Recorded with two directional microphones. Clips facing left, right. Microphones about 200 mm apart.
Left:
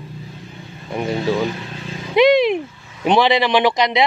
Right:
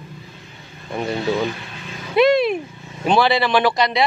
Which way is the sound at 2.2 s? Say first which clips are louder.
Left 2 dB; 15° left (ahead or behind).